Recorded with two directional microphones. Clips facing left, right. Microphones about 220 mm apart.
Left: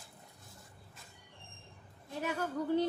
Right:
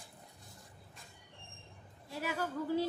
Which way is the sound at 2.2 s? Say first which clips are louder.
Left 2 dB; 5° right (ahead or behind).